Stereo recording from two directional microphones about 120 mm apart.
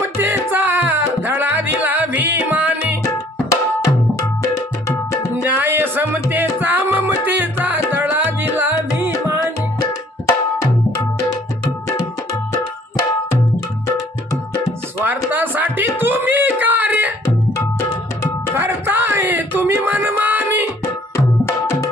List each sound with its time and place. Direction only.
0.2 s music: 15° right (ahead or behind)
5.4 s music: 15° right (ahead or behind)
15.0 s a sound: 15° right (ahead or behind)
18.5 s music: 20° right (ahead or behind)